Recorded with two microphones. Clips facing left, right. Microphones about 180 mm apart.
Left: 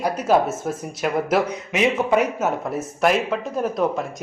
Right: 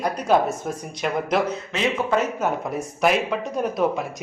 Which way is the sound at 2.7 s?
Centre (ahead or behind).